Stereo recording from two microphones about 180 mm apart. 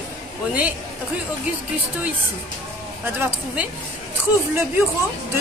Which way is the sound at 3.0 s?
10° right (ahead or behind).